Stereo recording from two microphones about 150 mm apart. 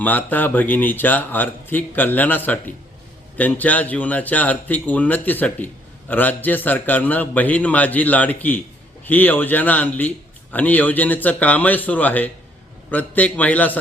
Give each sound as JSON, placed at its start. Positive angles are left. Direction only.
{"t": 0.0, "sound": "speech", "side_deg": 10}